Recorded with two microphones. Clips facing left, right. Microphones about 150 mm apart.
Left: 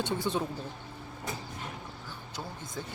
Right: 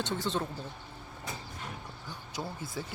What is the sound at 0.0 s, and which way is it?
Speech, 10° left (ahead or behind).